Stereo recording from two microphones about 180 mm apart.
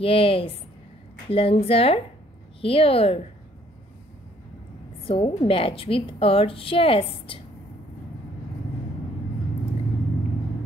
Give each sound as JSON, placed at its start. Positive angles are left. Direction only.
{"t": 0.0, "sound": "a woman's voice", "side_deg": 30}
{"t": 5.0, "sound": "a woman's voice", "side_deg": 30}